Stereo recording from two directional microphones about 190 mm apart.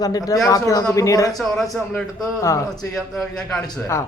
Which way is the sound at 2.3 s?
15° left (ahead or behind).